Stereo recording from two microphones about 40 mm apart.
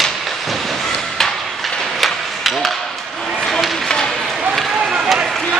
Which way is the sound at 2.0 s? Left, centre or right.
Centre.